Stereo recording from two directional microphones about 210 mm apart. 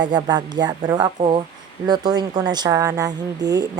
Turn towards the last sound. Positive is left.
turn(degrees=-20)  # may be behind; listen again after turning